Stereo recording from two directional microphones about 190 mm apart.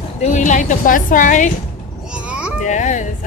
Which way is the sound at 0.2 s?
40° left (ahead or behind).